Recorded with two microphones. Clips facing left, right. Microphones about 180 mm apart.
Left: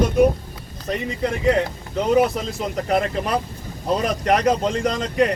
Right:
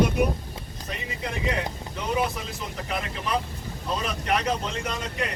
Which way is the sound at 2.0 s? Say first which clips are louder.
Left 10 dB; 60° left (ahead or behind).